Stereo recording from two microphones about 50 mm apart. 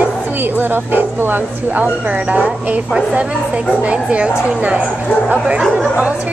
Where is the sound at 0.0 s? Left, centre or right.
Right.